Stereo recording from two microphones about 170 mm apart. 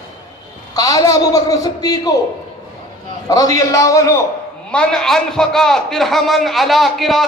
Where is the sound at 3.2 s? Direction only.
20° left (ahead or behind).